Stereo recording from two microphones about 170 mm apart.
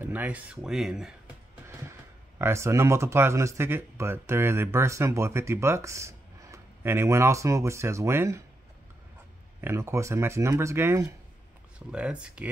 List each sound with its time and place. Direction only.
0.0 s speech: 10° right (ahead or behind)
1.7 s speech: 15° right (ahead or behind)
9.6 s speech: 15° right (ahead or behind)